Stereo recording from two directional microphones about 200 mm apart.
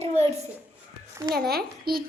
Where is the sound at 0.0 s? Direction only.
30° right (ahead or behind).